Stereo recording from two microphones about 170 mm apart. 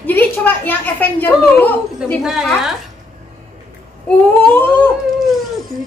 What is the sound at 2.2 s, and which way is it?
Speech, centre (ahead or behind).